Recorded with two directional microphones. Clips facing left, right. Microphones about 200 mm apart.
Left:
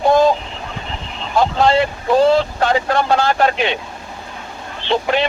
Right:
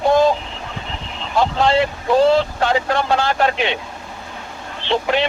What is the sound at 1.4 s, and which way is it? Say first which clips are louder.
Speech: left 2 dB; 45° left (ahead or behind).